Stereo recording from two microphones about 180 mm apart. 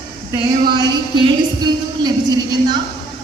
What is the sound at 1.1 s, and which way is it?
A woman's voice, 25° right (ahead or behind).